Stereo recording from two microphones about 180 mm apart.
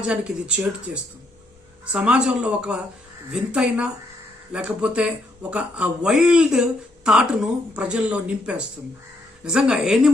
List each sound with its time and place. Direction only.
0.1 s speech: 5° right (ahead or behind)
1.9 s speech: 5° right (ahead or behind)